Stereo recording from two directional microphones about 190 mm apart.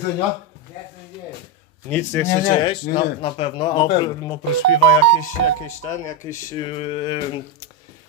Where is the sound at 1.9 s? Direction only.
15° left (ahead or behind).